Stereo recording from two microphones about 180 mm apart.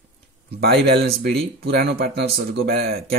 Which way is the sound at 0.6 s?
60° right (ahead or behind).